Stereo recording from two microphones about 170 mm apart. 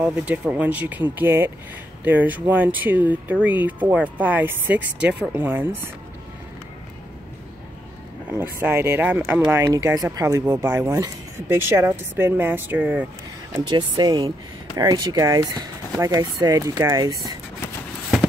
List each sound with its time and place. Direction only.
0.0 s speech: 10° right (ahead or behind)
8.3 s speech: 15° right (ahead or behind)
13.7 s speech: 25° right (ahead or behind)